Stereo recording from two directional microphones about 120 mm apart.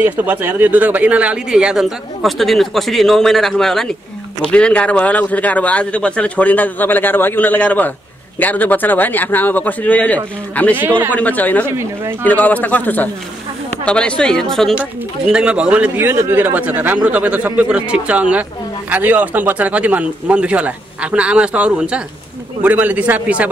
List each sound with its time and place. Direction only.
0.0 s a man's voice: 15° right (ahead or behind); by 10.8 s 10° left (ahead or behind)
10.8 s speech: 15° right (ahead or behind)
11.1 s a man's voice: 15° left (ahead or behind)
11.6 s speech: 20° right (ahead or behind)
12.3 s a man's voice: 15° left (ahead or behind)
15.2 s speech: 10° right (ahead or behind)